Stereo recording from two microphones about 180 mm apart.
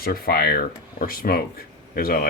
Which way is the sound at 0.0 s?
55° left (ahead or behind).